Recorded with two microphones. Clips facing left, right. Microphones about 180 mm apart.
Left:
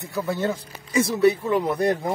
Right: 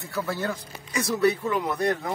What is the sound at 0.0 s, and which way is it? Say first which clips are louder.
Speech: left 4 dB; 20° left (ahead or behind).